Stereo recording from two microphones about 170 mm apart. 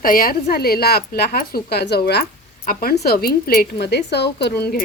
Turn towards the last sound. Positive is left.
turn(degrees=70)  # may be behind; listen again after turning